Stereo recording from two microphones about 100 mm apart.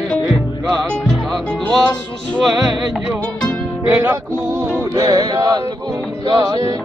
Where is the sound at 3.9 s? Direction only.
20° right (ahead or behind).